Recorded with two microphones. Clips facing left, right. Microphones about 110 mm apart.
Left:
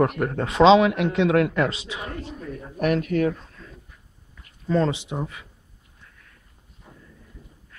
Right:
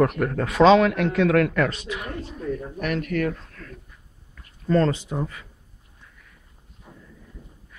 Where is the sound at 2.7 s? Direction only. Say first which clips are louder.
Left 8 dB; 40° left (ahead or behind).